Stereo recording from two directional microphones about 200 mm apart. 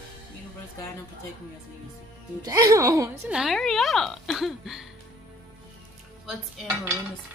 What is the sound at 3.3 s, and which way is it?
A woman's voice, centre (ahead or behind).